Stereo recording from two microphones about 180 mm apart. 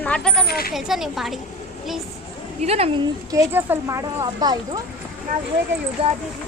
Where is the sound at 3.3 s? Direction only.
15° right (ahead or behind).